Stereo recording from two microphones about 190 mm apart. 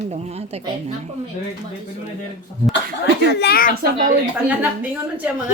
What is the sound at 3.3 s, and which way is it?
Speech, 60° left (ahead or behind).